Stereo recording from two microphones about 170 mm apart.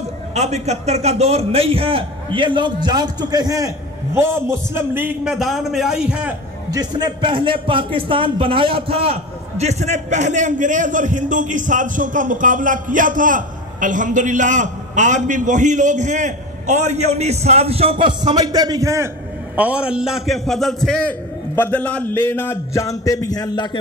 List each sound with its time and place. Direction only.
0.3 s a man's voice: 40° right (ahead or behind); by 6.3 s 5° right (ahead or behind)
6.7 s a man's voice: 25° right (ahead or behind)
19.5 s a man's voice: 10° right (ahead or behind); by 23.8 s 25° left (ahead or behind)